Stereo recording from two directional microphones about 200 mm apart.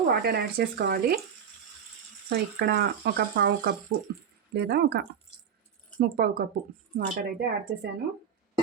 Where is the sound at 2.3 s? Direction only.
50° right (ahead or behind).